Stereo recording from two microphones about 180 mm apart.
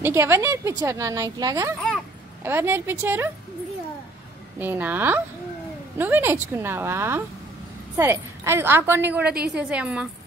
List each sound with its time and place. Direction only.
0.0 s speech: 15° right (ahead or behind)
4.6 s speech: 10° right (ahead or behind)